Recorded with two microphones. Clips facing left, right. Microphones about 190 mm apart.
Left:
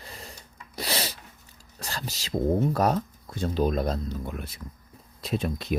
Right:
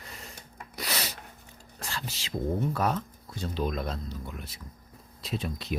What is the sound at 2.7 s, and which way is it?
Speech, 40° left (ahead or behind).